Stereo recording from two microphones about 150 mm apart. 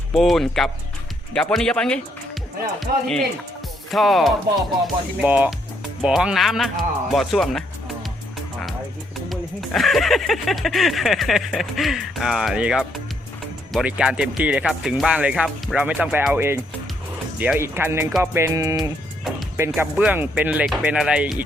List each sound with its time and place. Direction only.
0.1 s speech: centre (ahead or behind)
9.3 s speech: centre (ahead or behind); by 18.1 s 15° right (ahead or behind)
18.2 s music: 15° right (ahead or behind)
18.8 s bird: centre (ahead or behind)
19.7 s speech: 5° right (ahead or behind)